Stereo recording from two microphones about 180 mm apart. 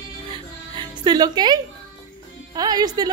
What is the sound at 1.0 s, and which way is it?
A woman's voice, 25° right (ahead or behind).